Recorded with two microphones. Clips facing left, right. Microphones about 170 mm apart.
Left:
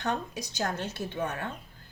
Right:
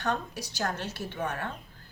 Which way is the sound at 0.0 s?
20° left (ahead or behind).